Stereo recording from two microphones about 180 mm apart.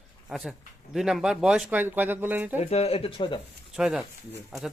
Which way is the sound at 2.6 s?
35° left (ahead or behind).